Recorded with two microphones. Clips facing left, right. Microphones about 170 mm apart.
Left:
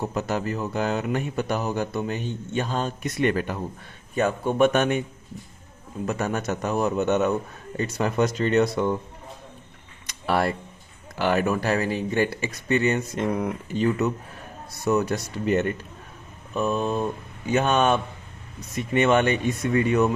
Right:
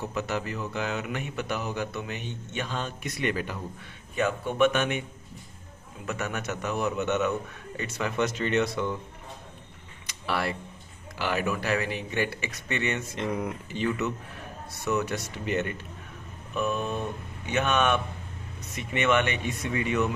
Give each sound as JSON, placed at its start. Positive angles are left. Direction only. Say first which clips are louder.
{"t": 0.0, "sound": "speech", "louder": "left 4 dB", "side_deg": 40}
{"t": 6.1, "sound": "speech", "louder": "left 5 dB", "side_deg": 35}
{"t": 10.1, "sound": "a sound", "louder": "left 6 dB", "side_deg": 45}
{"t": 11.2, "sound": "speech", "louder": "left 6 dB", "side_deg": 50}
{"t": 13.2, "sound": "speech", "louder": "left 2 dB", "side_deg": 50}
{"t": 16.6, "sound": "speech", "louder": "left 5 dB", "side_deg": 35}